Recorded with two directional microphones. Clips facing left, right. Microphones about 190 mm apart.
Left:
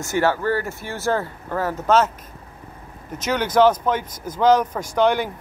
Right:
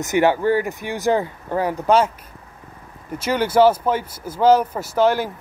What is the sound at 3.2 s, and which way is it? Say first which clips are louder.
Speech: right 2 dB; 10° right (ahead or behind).